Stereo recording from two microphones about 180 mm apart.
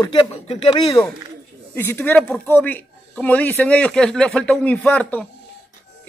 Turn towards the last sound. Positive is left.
turn(degrees=5)  # may be behind; listen again after turning